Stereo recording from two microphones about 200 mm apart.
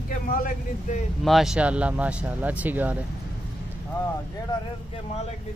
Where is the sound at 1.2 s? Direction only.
Centre (ahead or behind).